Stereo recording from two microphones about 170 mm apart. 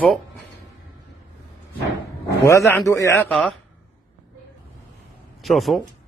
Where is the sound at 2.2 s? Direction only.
15° left (ahead or behind).